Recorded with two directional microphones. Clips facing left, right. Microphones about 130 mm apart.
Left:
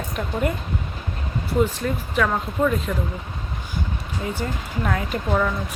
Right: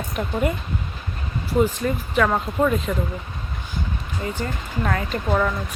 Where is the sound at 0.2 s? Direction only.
5° right (ahead or behind).